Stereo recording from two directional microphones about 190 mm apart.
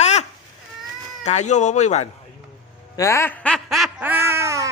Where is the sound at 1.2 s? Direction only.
40° left (ahead or behind).